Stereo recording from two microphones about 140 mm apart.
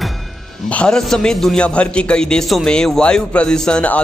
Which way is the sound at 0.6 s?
10° left (ahead or behind).